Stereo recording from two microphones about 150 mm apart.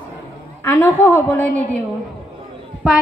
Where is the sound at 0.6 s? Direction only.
20° left (ahead or behind).